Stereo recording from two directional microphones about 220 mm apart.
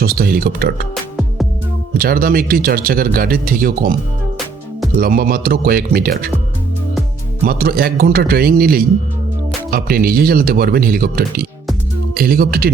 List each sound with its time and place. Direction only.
0.0 s speech: 40° right (ahead or behind)
2.0 s speech: 40° right (ahead or behind)
4.9 s speech: 40° right (ahead or behind)
7.4 s speech: 40° right (ahead or behind)